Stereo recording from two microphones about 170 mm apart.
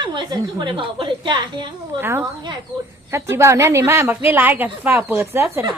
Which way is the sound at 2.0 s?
15° right (ahead or behind).